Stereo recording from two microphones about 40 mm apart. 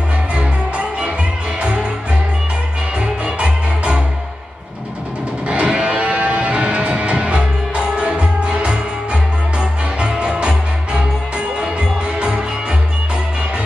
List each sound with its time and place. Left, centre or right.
0.3 s music: right
3.0 s music: right
5.5 s music: right